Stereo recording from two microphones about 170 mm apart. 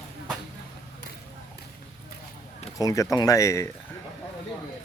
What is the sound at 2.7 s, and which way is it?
Speech, 20° left (ahead or behind).